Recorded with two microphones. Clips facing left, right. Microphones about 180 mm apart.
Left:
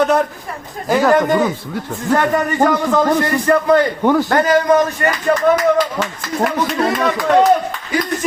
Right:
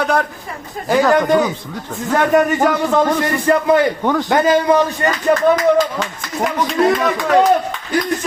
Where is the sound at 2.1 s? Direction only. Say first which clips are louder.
Right 2 dB; 15° right (ahead or behind).